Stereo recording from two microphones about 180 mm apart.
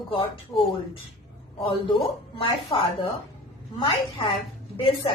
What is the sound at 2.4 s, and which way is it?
A woman's voice, 30° left (ahead or behind).